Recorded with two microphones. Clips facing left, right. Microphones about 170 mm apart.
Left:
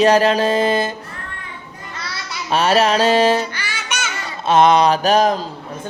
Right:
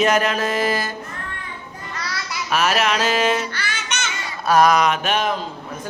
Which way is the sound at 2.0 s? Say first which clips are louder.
Right 1 dB; 30° left (ahead or behind).